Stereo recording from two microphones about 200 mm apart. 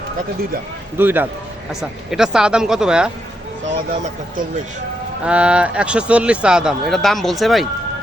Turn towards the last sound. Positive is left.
turn(degrees=0)  # may be behind; listen again after turning